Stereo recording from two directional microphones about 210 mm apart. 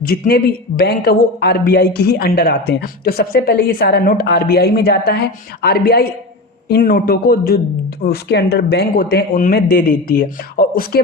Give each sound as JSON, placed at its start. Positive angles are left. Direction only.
{"t": 0.0, "sound": "speech", "side_deg": 45}